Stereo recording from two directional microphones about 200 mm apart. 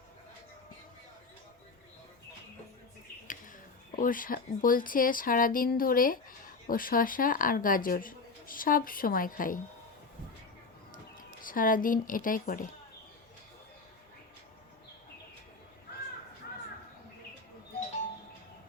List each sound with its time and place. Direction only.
3.9 s speech: 45° left (ahead or behind)
10.9 s speech: 45° left (ahead or behind)